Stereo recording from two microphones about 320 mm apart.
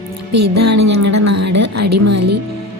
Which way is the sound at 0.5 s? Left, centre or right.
Right.